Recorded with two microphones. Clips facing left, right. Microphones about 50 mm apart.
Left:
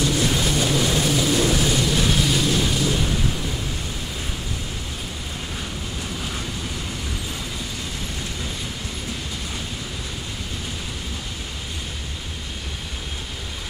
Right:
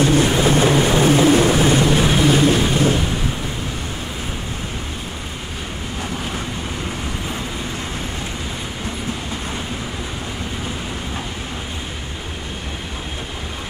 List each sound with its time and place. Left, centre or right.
0.0 s vehicle: right